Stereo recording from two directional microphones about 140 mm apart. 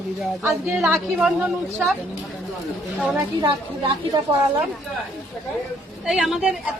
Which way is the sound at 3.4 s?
30° right (ahead or behind).